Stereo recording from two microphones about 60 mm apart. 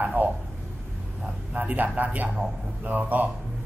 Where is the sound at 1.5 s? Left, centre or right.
Right.